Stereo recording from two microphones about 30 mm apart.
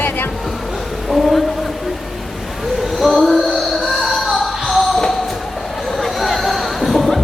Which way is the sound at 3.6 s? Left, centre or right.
Centre.